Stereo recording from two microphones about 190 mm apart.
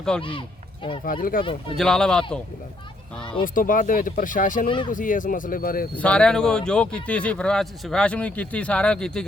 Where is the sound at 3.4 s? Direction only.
45° left (ahead or behind).